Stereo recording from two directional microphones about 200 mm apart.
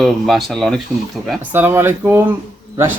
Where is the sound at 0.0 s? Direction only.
Centre (ahead or behind).